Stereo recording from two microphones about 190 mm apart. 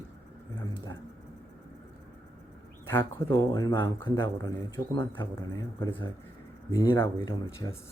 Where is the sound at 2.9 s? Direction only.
10° left (ahead or behind).